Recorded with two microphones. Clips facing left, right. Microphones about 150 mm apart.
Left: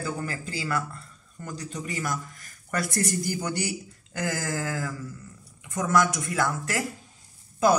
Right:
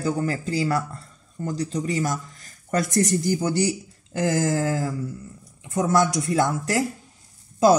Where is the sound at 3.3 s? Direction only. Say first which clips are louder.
Right 7 dB; 20° right (ahead or behind).